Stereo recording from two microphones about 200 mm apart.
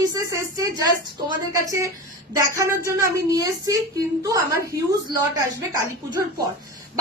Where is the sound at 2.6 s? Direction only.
15° right (ahead or behind).